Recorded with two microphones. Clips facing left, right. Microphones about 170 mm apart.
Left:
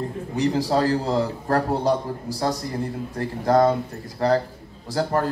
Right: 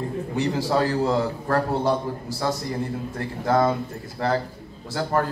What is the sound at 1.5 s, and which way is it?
Speech, 40° left (ahead or behind).